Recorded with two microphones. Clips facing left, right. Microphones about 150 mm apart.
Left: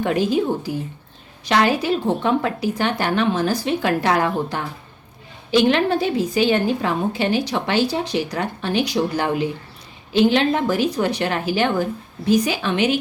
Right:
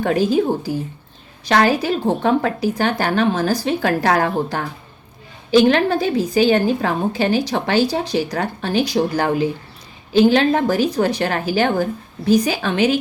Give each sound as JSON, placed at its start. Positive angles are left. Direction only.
{"t": 0.0, "sound": "a woman's voice", "side_deg": -40}